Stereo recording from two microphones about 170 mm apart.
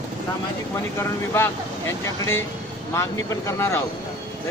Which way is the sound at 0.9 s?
15° left (ahead or behind).